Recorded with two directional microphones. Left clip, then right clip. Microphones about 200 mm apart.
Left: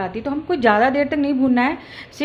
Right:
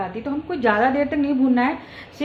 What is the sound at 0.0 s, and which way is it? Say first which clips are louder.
A woman's voice: left 2 dB; 25° left (ahead or behind).